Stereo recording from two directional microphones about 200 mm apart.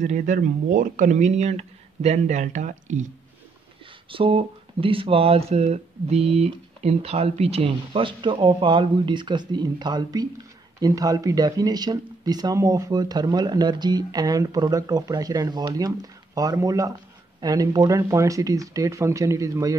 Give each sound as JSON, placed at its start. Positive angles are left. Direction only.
{"t": 0.0, "sound": "speech", "side_deg": -40}
{"t": 4.1, "sound": "speech", "side_deg": -25}